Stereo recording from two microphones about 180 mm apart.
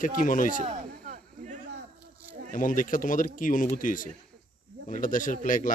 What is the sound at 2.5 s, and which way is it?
A man's voice, 50° left (ahead or behind).